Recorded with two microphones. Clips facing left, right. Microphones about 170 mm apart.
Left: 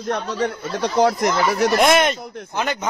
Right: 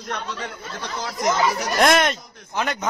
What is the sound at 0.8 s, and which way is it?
Speech, 65° left (ahead or behind).